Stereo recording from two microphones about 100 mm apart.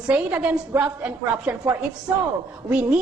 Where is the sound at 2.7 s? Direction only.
10° right (ahead or behind).